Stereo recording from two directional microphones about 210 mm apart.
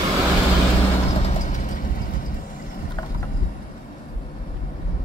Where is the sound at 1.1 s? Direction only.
30° left (ahead or behind).